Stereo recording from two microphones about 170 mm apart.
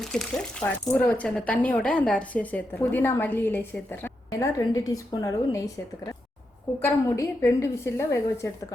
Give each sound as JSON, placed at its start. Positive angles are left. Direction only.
{"t": 0.0, "sound": "a woman's voice", "side_deg": 5}
{"t": 6.8, "sound": "speech", "side_deg": 15}